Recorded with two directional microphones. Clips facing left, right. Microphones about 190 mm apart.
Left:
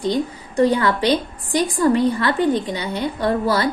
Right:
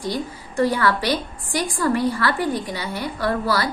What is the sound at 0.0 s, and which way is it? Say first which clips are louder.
A woman's voice: left 5 dB; 20° left (ahead or behind).